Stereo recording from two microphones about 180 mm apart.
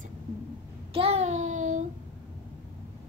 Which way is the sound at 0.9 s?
35° right (ahead or behind).